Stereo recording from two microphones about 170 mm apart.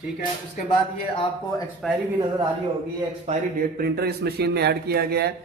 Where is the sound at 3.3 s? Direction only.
40° right (ahead or behind).